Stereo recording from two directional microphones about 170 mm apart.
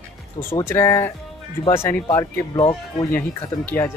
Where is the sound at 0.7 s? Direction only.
15° left (ahead or behind).